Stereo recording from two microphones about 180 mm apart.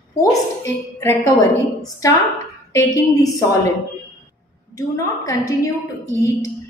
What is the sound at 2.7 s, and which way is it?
Speech, 20° left (ahead or behind).